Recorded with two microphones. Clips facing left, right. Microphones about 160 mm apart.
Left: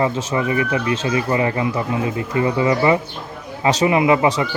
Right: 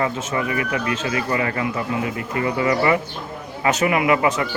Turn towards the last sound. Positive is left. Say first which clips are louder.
# left 3 dB
turn(degrees=25)  # may be behind; listen again after turning